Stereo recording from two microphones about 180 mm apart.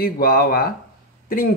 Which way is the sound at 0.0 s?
55° left (ahead or behind).